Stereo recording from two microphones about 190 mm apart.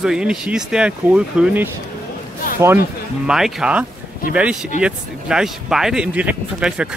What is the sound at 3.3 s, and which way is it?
Speech, centre (ahead or behind).